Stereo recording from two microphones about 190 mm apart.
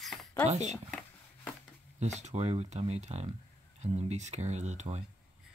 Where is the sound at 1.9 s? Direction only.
40° right (ahead or behind).